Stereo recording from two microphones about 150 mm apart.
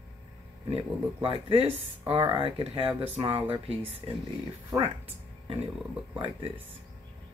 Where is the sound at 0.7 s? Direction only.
40° right (ahead or behind).